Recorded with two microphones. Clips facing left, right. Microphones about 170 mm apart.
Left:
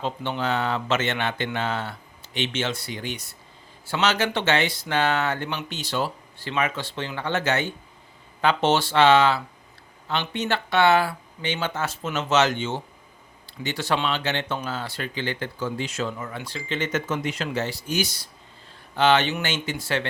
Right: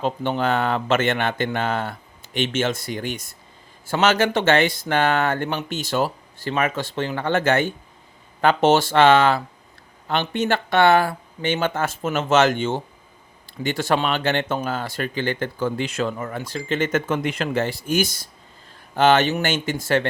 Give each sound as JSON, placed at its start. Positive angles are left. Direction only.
{"t": 0.0, "sound": "speech", "side_deg": -50}